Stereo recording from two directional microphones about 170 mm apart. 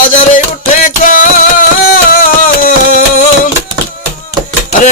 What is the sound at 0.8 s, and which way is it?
Music, 50° left (ahead or behind).